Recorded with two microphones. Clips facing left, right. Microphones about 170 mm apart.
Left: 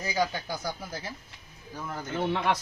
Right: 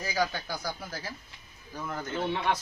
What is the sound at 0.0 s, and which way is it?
Speech, 20° left (ahead or behind).